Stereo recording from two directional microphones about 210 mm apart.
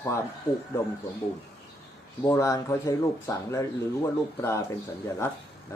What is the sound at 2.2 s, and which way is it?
Speech, 15° left (ahead or behind).